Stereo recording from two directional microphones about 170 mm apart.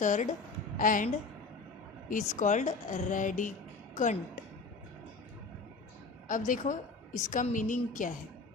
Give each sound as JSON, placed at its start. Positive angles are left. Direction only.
{"t": 0.0, "sound": "a woman's voice", "side_deg": 45}
{"t": 6.2, "sound": "a woman's voice", "side_deg": 50}